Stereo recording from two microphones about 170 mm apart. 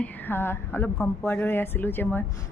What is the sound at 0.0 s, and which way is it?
A woman's voice, 10° left (ahead or behind).